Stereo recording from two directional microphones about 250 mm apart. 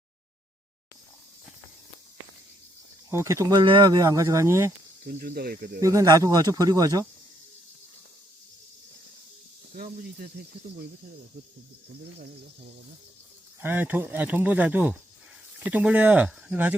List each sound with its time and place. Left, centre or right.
3.1 s speech: centre
5.0 s speech: right
5.8 s speech: centre
9.7 s speech: right
13.6 s speech: centre